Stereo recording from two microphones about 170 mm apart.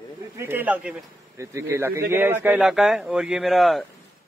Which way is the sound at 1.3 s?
20° right (ahead or behind).